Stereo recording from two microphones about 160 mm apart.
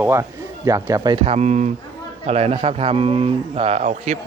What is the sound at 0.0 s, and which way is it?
Speech, 15° right (ahead or behind).